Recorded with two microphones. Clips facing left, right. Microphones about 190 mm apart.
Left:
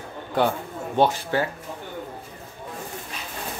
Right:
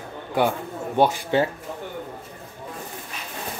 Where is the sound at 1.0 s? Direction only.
20° right (ahead or behind).